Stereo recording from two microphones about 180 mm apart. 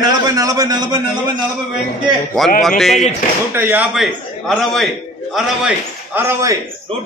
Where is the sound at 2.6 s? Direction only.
Centre (ahead or behind).